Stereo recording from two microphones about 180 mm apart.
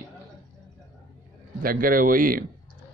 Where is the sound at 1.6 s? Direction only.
50° right (ahead or behind).